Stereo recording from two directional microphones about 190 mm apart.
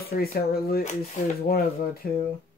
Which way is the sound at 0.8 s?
40° left (ahead or behind).